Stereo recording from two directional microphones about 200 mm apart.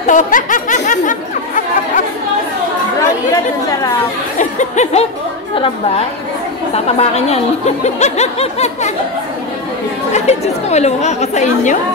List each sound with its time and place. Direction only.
0.0 s speech: 40° left (ahead or behind)
4.4 s speech: 35° left (ahead or behind)
6.7 s speech: 30° left (ahead or behind)
10.1 s speech: 35° left (ahead or behind)